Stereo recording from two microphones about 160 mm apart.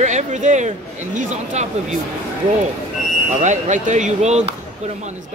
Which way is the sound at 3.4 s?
50° right (ahead or behind).